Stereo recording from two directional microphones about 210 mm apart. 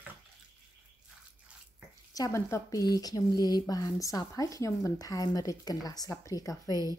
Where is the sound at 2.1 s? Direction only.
15° left (ahead or behind).